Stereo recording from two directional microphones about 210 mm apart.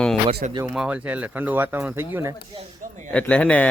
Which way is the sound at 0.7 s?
5° right (ahead or behind).